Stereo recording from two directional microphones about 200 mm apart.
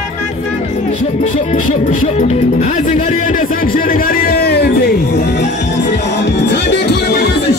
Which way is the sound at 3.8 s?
45° left (ahead or behind).